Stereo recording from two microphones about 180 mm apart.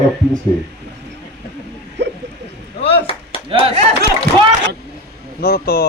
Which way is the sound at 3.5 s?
30° right (ahead or behind).